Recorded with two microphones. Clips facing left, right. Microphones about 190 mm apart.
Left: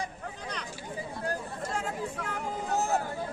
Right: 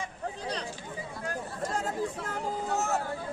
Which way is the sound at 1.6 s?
40° right (ahead or behind).